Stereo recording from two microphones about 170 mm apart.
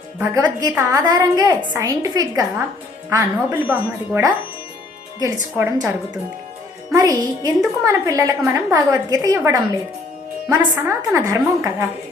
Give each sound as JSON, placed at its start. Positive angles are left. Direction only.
{"t": 0.2, "sound": "a woman's voice", "side_deg": -20}
{"t": 6.9, "sound": "a woman's voice", "side_deg": -20}